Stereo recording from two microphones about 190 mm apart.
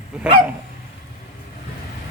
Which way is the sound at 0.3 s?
10° right (ahead or behind).